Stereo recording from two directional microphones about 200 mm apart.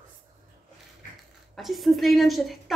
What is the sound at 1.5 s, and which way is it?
A woman's voice, centre (ahead or behind).